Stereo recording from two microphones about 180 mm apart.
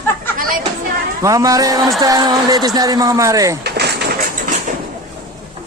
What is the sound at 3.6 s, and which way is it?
Vehicle, 65° right (ahead or behind).